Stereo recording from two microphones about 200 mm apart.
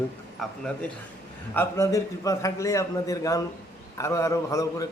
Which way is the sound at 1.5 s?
15° left (ahead or behind).